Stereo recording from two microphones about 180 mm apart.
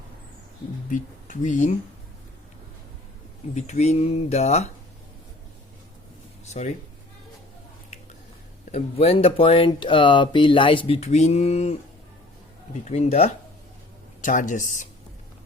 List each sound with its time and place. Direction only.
0.9 s speech: 45° left (ahead or behind)
3.5 s speech: 40° left (ahead or behind)
6.4 s a sound: 40° left (ahead or behind)
8.7 s speech: 35° left (ahead or behind)
12.9 s speech: 35° left (ahead or behind)